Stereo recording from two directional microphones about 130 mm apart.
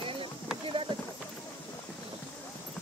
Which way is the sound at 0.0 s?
45° right (ahead or behind).